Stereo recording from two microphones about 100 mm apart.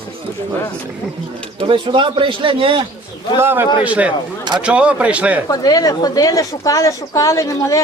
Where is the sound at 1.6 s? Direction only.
55° right (ahead or behind).